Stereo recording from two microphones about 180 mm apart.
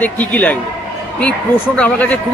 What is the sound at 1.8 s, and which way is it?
Speech, 10° left (ahead or behind).